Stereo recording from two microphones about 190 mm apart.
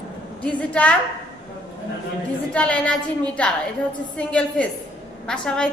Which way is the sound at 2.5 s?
5° left (ahead or behind).